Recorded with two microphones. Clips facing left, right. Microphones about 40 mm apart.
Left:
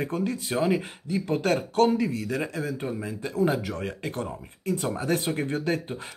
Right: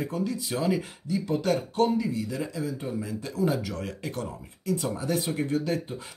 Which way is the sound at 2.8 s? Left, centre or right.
Left.